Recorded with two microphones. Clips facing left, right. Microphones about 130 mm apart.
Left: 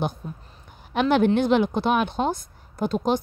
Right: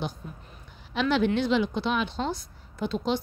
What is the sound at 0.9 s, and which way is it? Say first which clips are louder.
A woman's voice: left 5 dB; 50° left (ahead or behind).